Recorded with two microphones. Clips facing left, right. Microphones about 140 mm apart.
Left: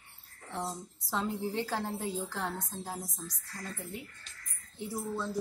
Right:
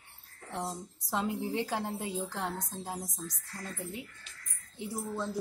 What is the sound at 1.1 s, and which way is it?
Speech, 15° right (ahead or behind).